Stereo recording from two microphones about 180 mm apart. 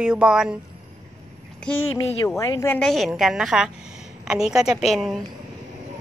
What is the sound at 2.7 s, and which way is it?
A woman's voice, centre (ahead or behind).